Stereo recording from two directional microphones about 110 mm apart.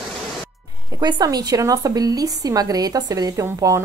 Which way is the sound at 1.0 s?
35° right (ahead or behind).